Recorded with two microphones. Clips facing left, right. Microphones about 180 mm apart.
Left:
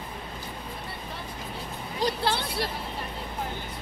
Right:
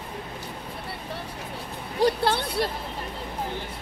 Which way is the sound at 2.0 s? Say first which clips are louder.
Right 5 dB; 55° right (ahead or behind).